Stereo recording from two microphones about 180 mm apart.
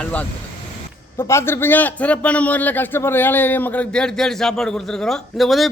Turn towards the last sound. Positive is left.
turn(degrees=0)  # may be behind; listen again after turning